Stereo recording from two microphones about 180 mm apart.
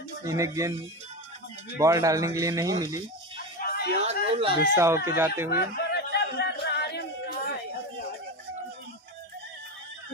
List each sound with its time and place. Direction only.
0.2 s speech: 15° right (ahead or behind)
1.8 s speech: 15° right (ahead or behind)
3.6 s a sound: 60° left (ahead or behind)
4.0 s a sound: 35° right (ahead or behind)
4.7 s speech: 15° right (ahead or behind)
5.9 s singing: 65° left (ahead or behind)